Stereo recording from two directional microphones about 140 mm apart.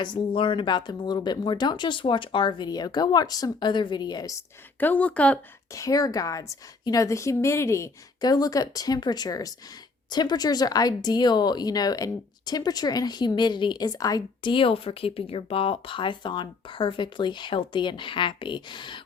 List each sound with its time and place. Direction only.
0.0 s speech: 35° left (ahead or behind)
4.8 s a woman's voice: 10° left (ahead or behind)
5.7 s a woman's voice: 25° left (ahead or behind)